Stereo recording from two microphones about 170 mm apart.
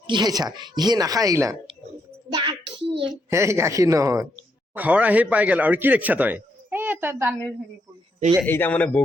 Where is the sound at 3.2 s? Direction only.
15° right (ahead or behind).